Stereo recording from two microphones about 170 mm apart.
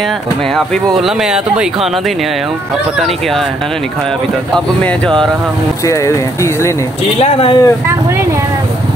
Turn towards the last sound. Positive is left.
turn(degrees=35)  # may be behind; listen again after turning